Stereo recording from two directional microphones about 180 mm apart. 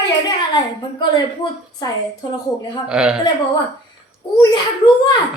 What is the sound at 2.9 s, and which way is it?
Speech, 5° right (ahead or behind).